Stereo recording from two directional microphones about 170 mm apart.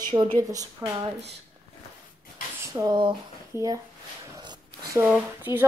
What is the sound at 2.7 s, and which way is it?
Speech, 25° right (ahead or behind).